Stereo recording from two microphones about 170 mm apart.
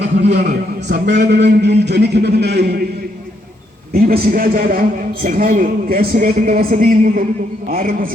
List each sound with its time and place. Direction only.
0.2 s a man's voice: 85° right
3.9 s a man's voice: 60° right (ahead or behind)